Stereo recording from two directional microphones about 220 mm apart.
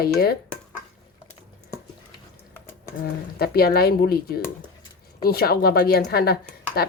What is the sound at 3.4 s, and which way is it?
A woman's voice, 45° left (ahead or behind).